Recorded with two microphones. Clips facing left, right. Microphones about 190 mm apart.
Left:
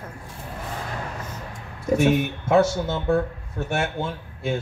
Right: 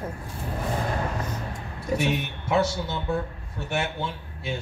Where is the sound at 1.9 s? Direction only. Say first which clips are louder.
Left 6 dB; 45° left (ahead or behind).